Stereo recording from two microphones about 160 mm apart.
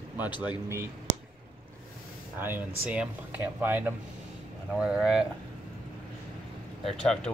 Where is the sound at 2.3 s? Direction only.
15° right (ahead or behind).